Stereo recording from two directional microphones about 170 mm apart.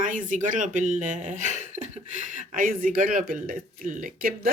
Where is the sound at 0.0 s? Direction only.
50° right (ahead or behind).